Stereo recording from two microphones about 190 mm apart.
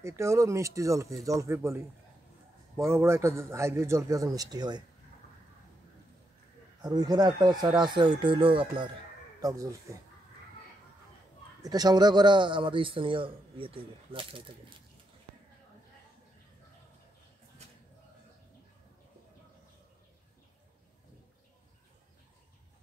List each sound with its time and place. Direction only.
0.0 s a man's voice: 15° right (ahead or behind)
2.9 s a man's voice: 15° right (ahead or behind)
6.8 s a man's voice: 20° right (ahead or behind)
11.6 s a man's voice: 20° right (ahead or behind)